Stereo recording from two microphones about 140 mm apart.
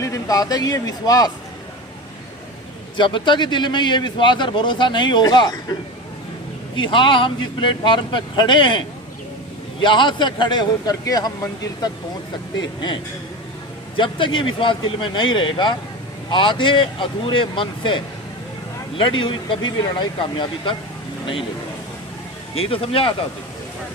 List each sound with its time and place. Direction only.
0.0 s speech: 25° left (ahead or behind)
3.0 s a man's voice: 35° left (ahead or behind)
6.7 s a man's voice: 35° left (ahead or behind)
9.8 s a man's voice: 35° left (ahead or behind)
22.5 s a man's voice: 40° left (ahead or behind)